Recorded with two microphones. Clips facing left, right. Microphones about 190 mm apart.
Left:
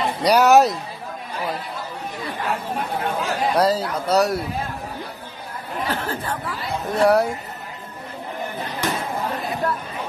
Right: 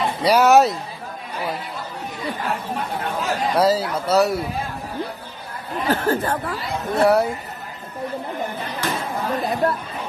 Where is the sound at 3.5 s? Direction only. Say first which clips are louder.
Right 2 dB; 5° right (ahead or behind).